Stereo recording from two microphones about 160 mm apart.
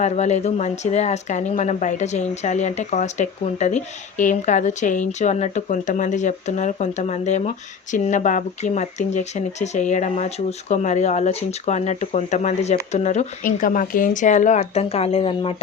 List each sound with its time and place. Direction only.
0.0 s speech: 45° left (ahead or behind)